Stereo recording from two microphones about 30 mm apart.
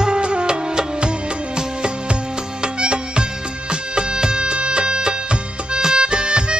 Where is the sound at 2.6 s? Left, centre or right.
Right.